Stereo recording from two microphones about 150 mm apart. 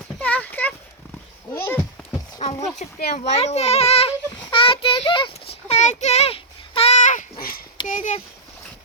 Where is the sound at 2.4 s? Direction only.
50° left (ahead or behind); by 7.6 s 75° left (ahead or behind).